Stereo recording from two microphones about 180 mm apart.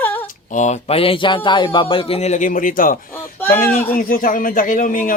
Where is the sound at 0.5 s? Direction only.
40° left (ahead or behind).